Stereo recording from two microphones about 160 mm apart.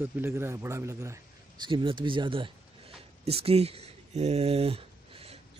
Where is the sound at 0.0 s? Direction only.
15° right (ahead or behind).